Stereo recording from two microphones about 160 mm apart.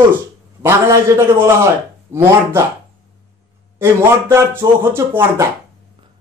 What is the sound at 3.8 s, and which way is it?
A man's voice, 15° right (ahead or behind).